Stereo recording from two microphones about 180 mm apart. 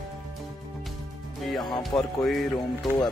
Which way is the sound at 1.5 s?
25° left (ahead or behind).